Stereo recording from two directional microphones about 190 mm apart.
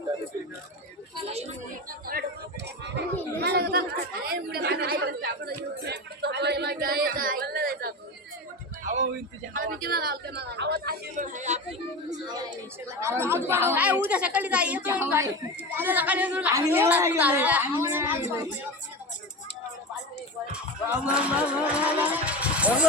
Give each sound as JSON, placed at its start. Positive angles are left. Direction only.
{"t": 1.1, "sound": "speech", "side_deg": -35}
{"t": 1.9, "sound": "speech", "side_deg": -50}
{"t": 3.3, "sound": "speech", "side_deg": -60}
{"t": 5.8, "sound": "a sound", "side_deg": -60}
{"t": 9.5, "sound": "speech", "side_deg": -45}
{"t": 12.0, "sound": "speech", "side_deg": -20}
{"t": 21.2, "sound": "speech", "side_deg": -5}